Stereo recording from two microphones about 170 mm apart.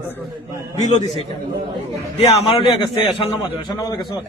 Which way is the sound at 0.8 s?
45° left (ahead or behind).